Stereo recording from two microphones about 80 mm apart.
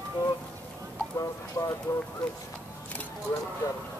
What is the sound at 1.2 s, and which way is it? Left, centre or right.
Speech, left.